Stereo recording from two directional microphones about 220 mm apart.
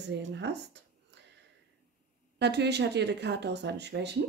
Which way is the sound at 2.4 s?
50° right (ahead or behind).